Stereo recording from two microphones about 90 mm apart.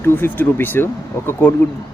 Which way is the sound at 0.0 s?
25° left (ahead or behind).